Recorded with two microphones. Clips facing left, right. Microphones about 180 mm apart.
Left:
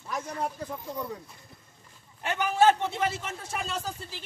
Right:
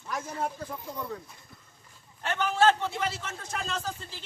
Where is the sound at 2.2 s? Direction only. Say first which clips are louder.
Left 1 dB; 15° left (ahead or behind).